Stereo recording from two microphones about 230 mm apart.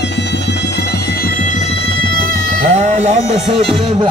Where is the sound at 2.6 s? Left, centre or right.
Right.